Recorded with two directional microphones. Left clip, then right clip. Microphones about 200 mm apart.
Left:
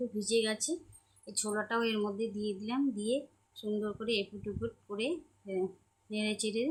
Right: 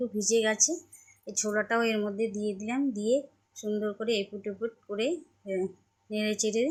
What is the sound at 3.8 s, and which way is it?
Speech, 10° right (ahead or behind).